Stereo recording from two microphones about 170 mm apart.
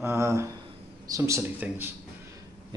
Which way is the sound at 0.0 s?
15° right (ahead or behind).